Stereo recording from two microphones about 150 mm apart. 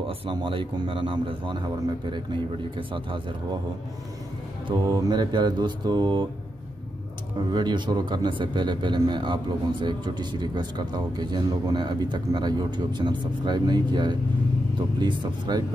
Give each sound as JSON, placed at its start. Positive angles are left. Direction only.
{"t": 0.0, "sound": "speech", "side_deg": -35}
{"t": 4.6, "sound": "speech", "side_deg": -25}
{"t": 7.5, "sound": "speech", "side_deg": -30}